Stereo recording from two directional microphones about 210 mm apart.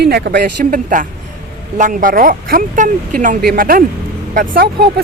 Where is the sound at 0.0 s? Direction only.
45° right (ahead or behind).